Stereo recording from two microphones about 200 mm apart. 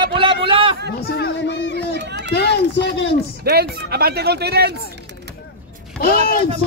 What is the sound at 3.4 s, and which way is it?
Speech, 50° right (ahead or behind).